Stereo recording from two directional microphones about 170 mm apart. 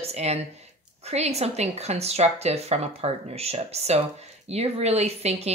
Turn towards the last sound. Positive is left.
turn(degrees=-40)  # may be behind; listen again after turning